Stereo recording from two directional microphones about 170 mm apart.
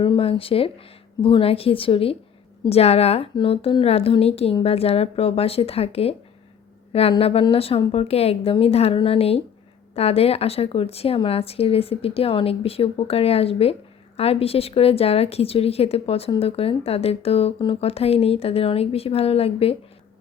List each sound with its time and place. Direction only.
0.0 s a woman's voice: 30° left (ahead or behind)